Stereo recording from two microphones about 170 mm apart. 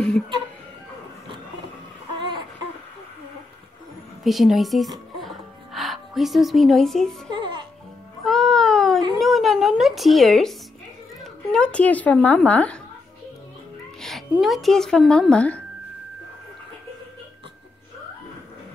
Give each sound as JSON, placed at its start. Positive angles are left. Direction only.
{"t": 2.1, "sound": "a sound", "side_deg": -30}
{"t": 4.2, "sound": "speech", "side_deg": 0}
{"t": 5.2, "sound": "music", "side_deg": 0}
{"t": 7.3, "sound": "music", "side_deg": -30}
{"t": 8.2, "sound": "a sound", "side_deg": 0}
{"t": 11.5, "sound": "a woman's voice", "side_deg": 5}
{"t": 14.0, "sound": "speech", "side_deg": 0}